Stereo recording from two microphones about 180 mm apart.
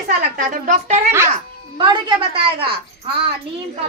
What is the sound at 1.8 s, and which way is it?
Speech, 25° right (ahead or behind).